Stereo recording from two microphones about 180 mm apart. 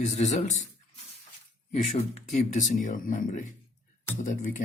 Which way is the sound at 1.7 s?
35° left (ahead or behind).